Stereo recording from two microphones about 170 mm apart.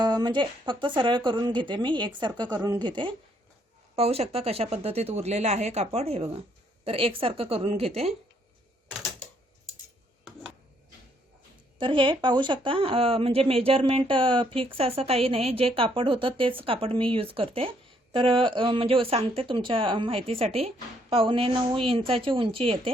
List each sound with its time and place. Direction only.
0.0 s speech: 25° right (ahead or behind)
11.8 s speech: 30° right (ahead or behind)